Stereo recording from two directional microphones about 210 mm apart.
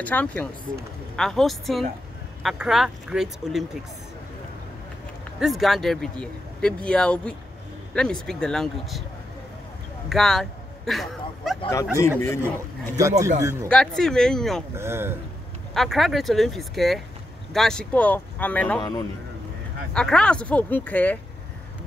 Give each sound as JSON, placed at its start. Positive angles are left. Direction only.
{"t": 0.0, "sound": "speech", "side_deg": 5}
{"t": 5.4, "sound": "speech", "side_deg": 0}
{"t": 10.0, "sound": "a sound", "side_deg": 0}
{"t": 12.2, "sound": "speech", "side_deg": 10}
{"t": 13.4, "sound": "a man's voice", "side_deg": -15}
{"t": 13.7, "sound": "speech", "side_deg": 5}
{"t": 14.8, "sound": "a man's voice", "side_deg": -10}
{"t": 15.7, "sound": "speech", "side_deg": 0}
{"t": 18.8, "sound": "speech", "side_deg": 20}
{"t": 19.9, "sound": "speech", "side_deg": 5}